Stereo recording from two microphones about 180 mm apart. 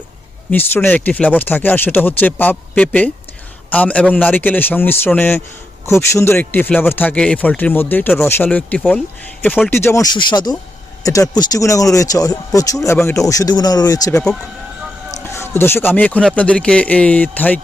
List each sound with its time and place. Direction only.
0.5 s speech: 10° left (ahead or behind)
15.2 s speech: 15° left (ahead or behind)